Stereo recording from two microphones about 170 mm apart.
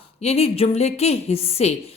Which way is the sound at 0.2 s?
35° left (ahead or behind).